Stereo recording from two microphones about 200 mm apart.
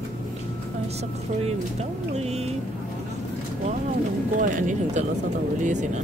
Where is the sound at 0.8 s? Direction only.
30° right (ahead or behind).